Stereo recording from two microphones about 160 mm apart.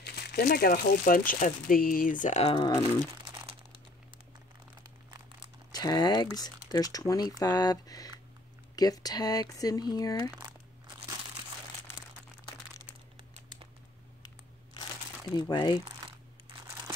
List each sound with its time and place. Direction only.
0.0 s speech: 90° left; by 2.5 s 45° left (ahead or behind)
2.5 s speech: 25° left (ahead or behind)
3.3 s crumpling: 30° right (ahead or behind)
5.7 s speech: 25° left (ahead or behind)
15.3 s speech: 25° left (ahead or behind)